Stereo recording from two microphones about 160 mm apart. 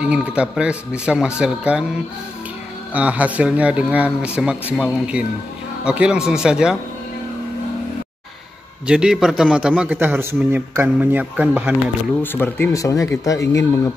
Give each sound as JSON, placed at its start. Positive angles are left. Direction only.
{"t": 0.0, "sound": "a man's voice", "side_deg": -5}
{"t": 2.9, "sound": "a man's voice", "side_deg": -10}
{"t": 8.8, "sound": "a man's voice", "side_deg": -5}
{"t": 12.2, "sound": "speech", "side_deg": 15}